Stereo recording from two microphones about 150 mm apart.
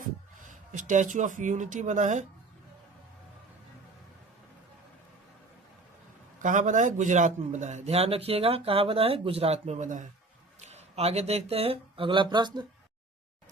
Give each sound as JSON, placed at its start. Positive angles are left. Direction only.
{"t": 0.4, "sound": "speech", "side_deg": -60}
{"t": 6.4, "sound": "a man's voice", "side_deg": -55}